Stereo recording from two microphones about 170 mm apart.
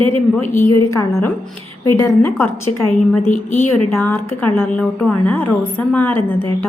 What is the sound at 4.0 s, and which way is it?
A woman's voice, 10° left (ahead or behind).